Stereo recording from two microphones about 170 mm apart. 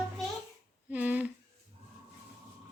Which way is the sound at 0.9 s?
10° right (ahead or behind).